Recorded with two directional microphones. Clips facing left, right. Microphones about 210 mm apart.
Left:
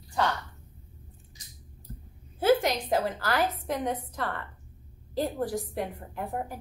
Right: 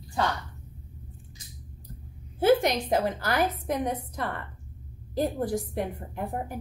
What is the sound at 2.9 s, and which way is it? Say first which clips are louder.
A woman's voice: right 1 dB; 20° right (ahead or behind).